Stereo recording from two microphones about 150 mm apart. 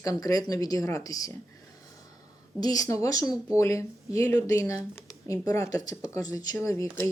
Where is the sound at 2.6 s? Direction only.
25° left (ahead or behind).